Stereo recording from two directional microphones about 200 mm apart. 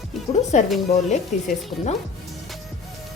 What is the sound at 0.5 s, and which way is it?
Speech, 35° left (ahead or behind).